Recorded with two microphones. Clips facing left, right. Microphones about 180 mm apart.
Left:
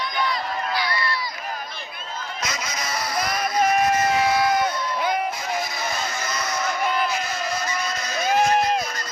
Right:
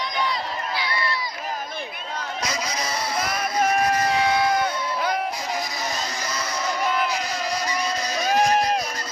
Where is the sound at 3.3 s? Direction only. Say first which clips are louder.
Left 3 dB; 5° right (ahead or behind).